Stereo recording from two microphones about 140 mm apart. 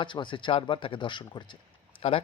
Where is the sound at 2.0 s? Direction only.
45° left (ahead or behind).